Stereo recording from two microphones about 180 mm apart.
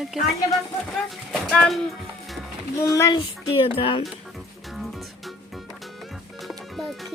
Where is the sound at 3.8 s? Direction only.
30° left (ahead or behind).